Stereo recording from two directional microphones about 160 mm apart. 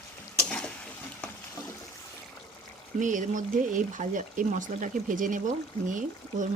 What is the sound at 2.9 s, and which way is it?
Speech, 50° right (ahead or behind).